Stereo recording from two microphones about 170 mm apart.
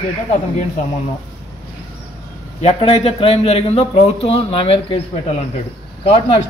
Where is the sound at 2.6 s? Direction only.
35° left (ahead or behind).